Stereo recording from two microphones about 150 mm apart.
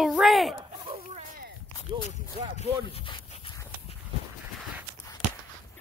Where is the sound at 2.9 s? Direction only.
35° left (ahead or behind).